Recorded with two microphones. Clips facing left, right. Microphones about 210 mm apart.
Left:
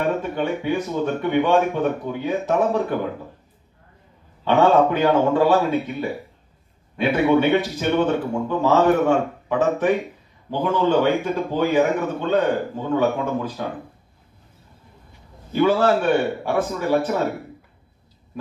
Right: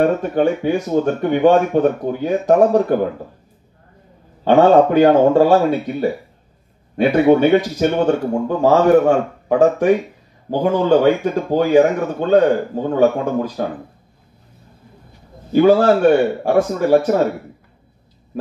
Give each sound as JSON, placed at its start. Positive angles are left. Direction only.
{"t": 0.0, "sound": "a man's voice", "side_deg": -45}
{"t": 4.5, "sound": "a man's voice", "side_deg": -40}
{"t": 15.5, "sound": "speech", "side_deg": -40}